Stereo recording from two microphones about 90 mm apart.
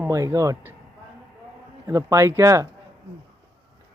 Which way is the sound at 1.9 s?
35° right (ahead or behind).